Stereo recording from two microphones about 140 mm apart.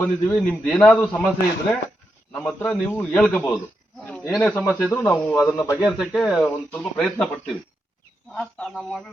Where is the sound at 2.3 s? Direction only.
5° left (ahead or behind).